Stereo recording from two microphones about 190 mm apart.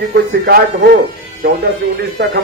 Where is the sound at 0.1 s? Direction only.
55° right (ahead or behind).